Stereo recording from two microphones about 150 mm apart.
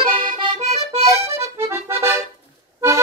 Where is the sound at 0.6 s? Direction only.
45° right (ahead or behind).